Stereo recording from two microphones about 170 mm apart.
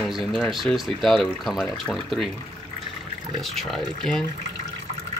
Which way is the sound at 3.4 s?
Centre (ahead or behind).